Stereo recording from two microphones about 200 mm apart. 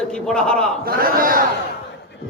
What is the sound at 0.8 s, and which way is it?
Speech, 45° right (ahead or behind).